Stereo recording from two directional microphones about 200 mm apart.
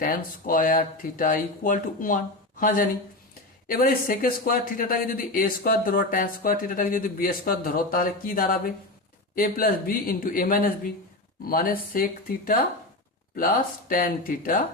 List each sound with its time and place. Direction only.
0.0 s speech: 45° left (ahead or behind)
13.3 s speech: 45° left (ahead or behind)